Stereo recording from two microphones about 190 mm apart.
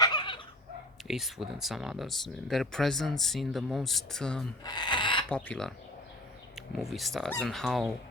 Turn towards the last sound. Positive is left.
turn(degrees=0)  # may be behind; listen again after turning